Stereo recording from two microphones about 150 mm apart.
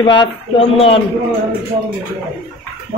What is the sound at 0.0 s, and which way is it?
Speech, 30° left (ahead or behind).